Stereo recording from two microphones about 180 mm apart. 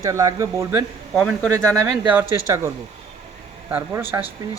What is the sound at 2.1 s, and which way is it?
Speech, 10° right (ahead or behind).